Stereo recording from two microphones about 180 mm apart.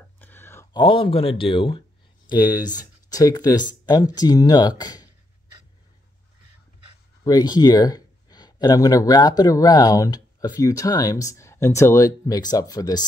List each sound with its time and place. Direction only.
0.2 s a sound: 10° left (ahead or behind)
0.8 s speech: 30° left (ahead or behind)
7.2 s speech: 20° left (ahead or behind)